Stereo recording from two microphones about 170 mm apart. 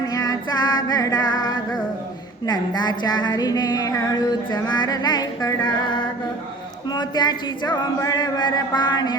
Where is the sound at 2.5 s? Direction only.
25° left (ahead or behind).